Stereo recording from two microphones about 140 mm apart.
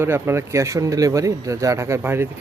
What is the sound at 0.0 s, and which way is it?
Speech, 20° right (ahead or behind).